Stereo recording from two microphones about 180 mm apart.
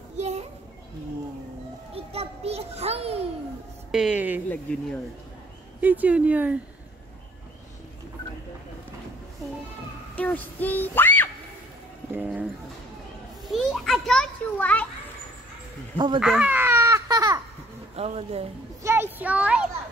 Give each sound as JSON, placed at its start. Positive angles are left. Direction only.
{"t": 0.2, "sound": "children playing", "side_deg": -35}
{"t": 2.0, "sound": "music", "side_deg": -35}
{"t": 3.9, "sound": "speech", "side_deg": -5}
{"t": 4.5, "sound": "speech", "side_deg": 5}
{"t": 5.8, "sound": "speech", "side_deg": -10}
{"t": 10.1, "sound": "speech", "side_deg": 10}
{"t": 12.1, "sound": "speech", "side_deg": -10}
{"t": 13.5, "sound": "a child's voice", "side_deg": 0}
{"t": 16.2, "sound": "babbling", "side_deg": -5}
{"t": 17.9, "sound": "speech", "side_deg": -35}
{"t": 18.8, "sound": "a child's voice", "side_deg": -15}